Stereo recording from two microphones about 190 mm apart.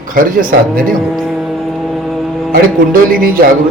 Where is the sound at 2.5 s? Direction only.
50° right (ahead or behind).